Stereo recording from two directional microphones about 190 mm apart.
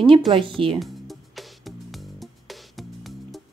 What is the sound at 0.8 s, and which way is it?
Music, centre (ahead or behind).